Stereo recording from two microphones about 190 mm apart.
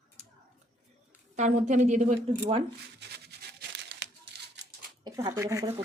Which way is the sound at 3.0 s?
60° right (ahead or behind).